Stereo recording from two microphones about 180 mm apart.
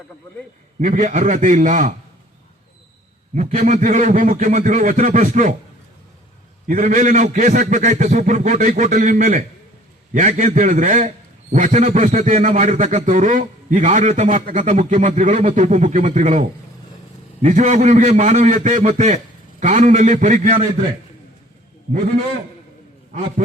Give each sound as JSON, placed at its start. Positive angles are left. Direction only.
{"t": 0.8, "sound": "a man's voice", "side_deg": -35}
{"t": 3.3, "sound": "a man's voice", "side_deg": -45}
{"t": 6.7, "sound": "a man's voice", "side_deg": -45}